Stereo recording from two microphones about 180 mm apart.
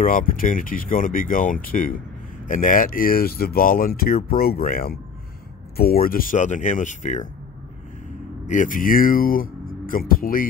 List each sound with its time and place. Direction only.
0.0 s speech: 50° left (ahead or behind)
8.5 s speech: 45° left (ahead or behind)